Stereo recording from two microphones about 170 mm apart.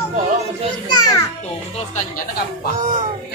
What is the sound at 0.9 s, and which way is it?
Speech, 20° left (ahead or behind).